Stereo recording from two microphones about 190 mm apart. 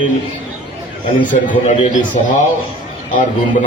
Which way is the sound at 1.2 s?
45° left (ahead or behind).